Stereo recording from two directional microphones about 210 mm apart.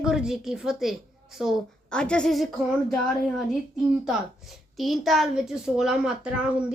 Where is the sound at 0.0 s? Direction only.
5° right (ahead or behind).